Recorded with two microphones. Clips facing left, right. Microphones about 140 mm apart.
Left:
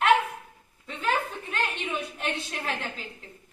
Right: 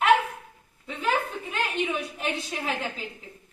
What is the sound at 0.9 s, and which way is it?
A woman's voice, 5° right (ahead or behind).